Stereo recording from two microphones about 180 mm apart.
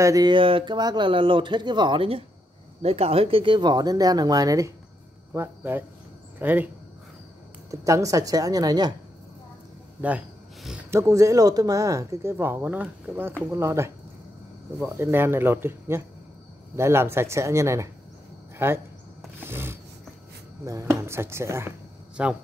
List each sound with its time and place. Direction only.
0.0 s speech: 20° right (ahead or behind)
7.7 s speech: 15° right (ahead or behind)
10.0 s a sound: 5° right (ahead or behind)
10.9 s speech: 15° right (ahead or behind)
19.4 s a sound: 10° right (ahead or behind)
20.9 s speech: 15° right (ahead or behind)